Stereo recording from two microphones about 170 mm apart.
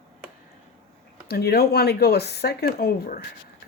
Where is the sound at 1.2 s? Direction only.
70° left (ahead or behind).